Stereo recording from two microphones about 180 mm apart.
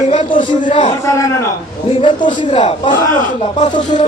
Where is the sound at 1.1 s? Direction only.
15° left (ahead or behind).